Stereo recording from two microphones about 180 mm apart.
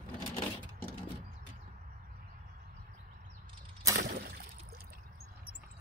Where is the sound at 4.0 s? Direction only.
60° right (ahead or behind).